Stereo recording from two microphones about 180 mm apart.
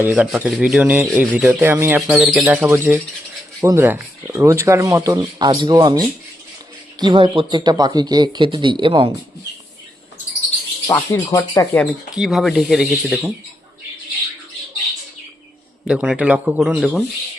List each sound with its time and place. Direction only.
0.0 s speech: 10° right (ahead or behind); by 9.1 s 30° right (ahead or behind)
10.8 s speech: 15° left (ahead or behind)
11.8 s speech: centre (ahead or behind)
15.9 s speech: 5° right (ahead or behind)